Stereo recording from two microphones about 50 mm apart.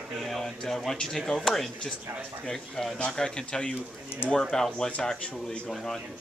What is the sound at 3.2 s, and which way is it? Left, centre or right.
Speech, centre.